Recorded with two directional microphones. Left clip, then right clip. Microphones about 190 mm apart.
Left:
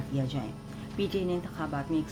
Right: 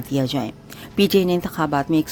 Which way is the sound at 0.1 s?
55° right (ahead or behind).